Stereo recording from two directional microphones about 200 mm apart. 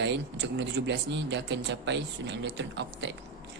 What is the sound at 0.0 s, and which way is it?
Speech, 60° right (ahead or behind).